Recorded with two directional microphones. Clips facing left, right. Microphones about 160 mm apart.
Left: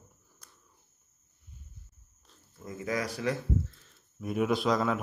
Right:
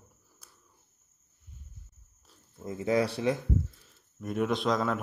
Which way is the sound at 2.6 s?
25° right (ahead or behind).